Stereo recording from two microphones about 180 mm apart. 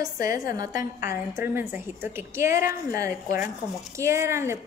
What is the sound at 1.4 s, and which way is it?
A woman's voice, 10° right (ahead or behind).